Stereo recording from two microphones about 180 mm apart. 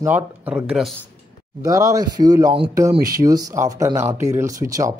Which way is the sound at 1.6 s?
20° right (ahead or behind).